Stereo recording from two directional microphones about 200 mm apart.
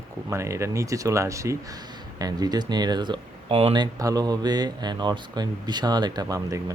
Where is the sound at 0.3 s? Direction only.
15° right (ahead or behind).